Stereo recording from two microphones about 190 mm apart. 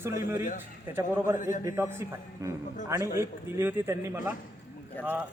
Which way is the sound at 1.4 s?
45° left (ahead or behind).